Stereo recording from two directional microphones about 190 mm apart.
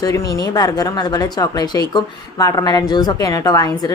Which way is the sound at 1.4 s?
20° left (ahead or behind).